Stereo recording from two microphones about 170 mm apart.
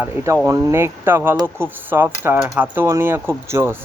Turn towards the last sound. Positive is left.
turn(degrees=-15)  # may be behind; listen again after turning